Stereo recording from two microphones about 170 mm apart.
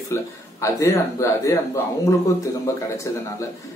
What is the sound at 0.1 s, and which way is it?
Speech, 15° left (ahead or behind).